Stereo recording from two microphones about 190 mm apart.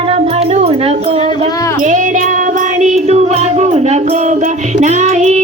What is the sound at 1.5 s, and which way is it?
Music, 20° left (ahead or behind).